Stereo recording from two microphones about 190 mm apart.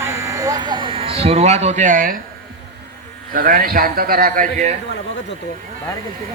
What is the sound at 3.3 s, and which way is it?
A man's voice, 50° right (ahead or behind).